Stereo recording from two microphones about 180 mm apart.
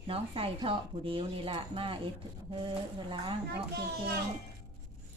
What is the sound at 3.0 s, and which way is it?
Speech, 25° right (ahead or behind).